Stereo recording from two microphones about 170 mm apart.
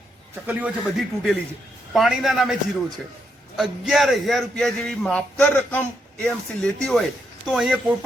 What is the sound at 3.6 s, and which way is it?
A man's voice, centre (ahead or behind).